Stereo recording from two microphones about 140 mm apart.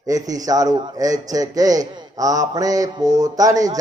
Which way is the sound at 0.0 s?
25° right (ahead or behind).